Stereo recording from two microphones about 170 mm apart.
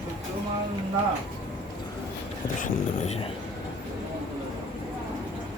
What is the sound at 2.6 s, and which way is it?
Speech, 50° left (ahead or behind).